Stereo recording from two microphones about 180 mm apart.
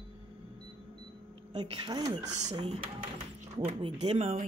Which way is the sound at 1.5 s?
25° right (ahead or behind).